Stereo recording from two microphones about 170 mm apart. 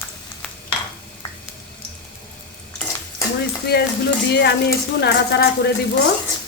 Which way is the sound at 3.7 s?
70° left (ahead or behind).